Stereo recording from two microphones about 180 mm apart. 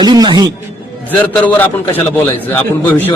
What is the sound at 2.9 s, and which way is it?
Speech, 10° left (ahead or behind).